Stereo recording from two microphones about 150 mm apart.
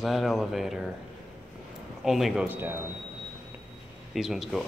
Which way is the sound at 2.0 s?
Centre (ahead or behind).